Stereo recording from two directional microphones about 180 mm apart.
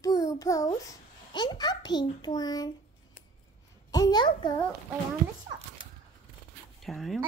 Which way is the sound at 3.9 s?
20° left (ahead or behind).